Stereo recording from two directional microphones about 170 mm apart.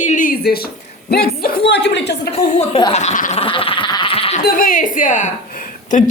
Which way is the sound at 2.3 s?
35° left (ahead or behind).